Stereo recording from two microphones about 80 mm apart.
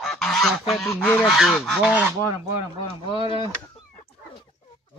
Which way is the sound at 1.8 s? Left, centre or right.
Centre.